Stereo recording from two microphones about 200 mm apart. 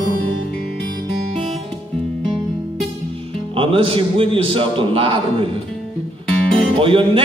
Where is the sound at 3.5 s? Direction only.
25° right (ahead or behind).